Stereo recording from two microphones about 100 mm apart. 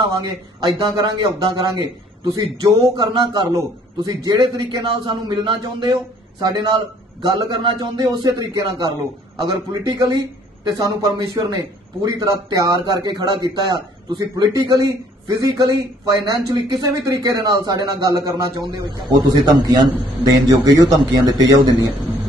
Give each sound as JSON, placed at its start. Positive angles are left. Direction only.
{"t": 0.2, "sound": "a man's voice", "side_deg": -45}